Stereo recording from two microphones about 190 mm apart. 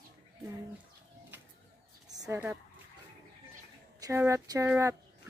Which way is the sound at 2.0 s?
20° right (ahead or behind).